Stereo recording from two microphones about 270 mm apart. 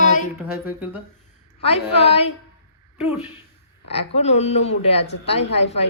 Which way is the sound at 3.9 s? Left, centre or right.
Left.